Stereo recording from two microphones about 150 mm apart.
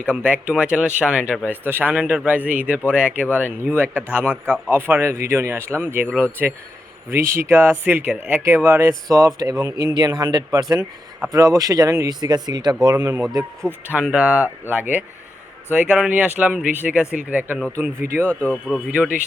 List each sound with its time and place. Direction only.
0.0 s speech: 10° right (ahead or behind)
4.2 s speech: 10° left (ahead or behind)
4.5 s speech: 15° right (ahead or behind)
13.7 s speech: 10° right (ahead or behind)
18.2 s speech: 10° left (ahead or behind)
18.6 s speech: 10° right (ahead or behind)